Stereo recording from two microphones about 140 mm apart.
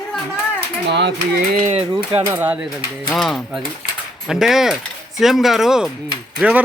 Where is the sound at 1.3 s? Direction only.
90° right.